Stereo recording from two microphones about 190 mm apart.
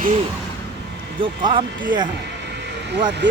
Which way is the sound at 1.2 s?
25° right (ahead or behind).